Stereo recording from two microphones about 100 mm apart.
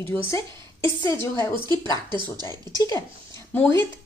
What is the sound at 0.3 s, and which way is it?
A woman's voice, 30° left (ahead or behind).